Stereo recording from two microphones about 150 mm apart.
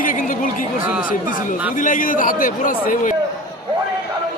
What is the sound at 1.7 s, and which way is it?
A man's voice, 60° left (ahead or behind).